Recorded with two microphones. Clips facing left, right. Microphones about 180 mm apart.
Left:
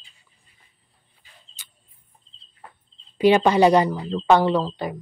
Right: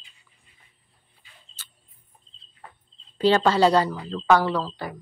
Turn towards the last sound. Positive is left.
turn(degrees=20)  # may be behind; listen again after turning